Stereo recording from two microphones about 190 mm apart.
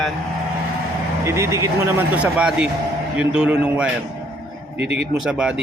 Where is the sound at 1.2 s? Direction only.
15° right (ahead or behind).